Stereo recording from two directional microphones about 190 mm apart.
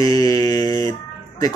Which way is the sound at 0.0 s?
20° left (ahead or behind).